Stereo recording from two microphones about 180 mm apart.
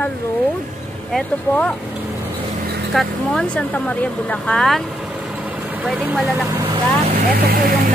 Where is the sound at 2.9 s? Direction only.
5° left (ahead or behind).